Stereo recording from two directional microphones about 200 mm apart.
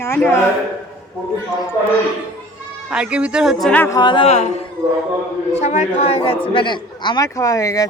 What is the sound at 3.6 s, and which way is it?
Speech, 10° left (ahead or behind).